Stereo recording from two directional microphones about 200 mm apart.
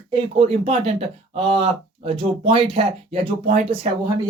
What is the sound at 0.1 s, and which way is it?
Speech, 30° right (ahead or behind).